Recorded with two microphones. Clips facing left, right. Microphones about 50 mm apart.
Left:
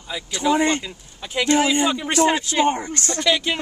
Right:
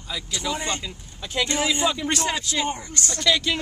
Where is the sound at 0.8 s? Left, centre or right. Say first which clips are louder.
Left 2 dB; centre.